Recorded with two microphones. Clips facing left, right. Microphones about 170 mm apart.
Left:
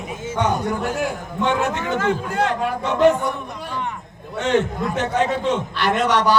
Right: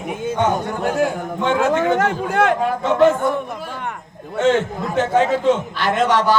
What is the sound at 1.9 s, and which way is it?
Speech, 70° right (ahead or behind).